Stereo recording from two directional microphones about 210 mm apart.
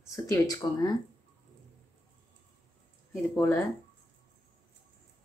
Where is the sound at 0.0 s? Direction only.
15° left (ahead or behind).